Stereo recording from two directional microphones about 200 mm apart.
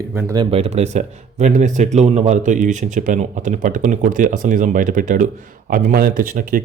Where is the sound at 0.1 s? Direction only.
10° right (ahead or behind).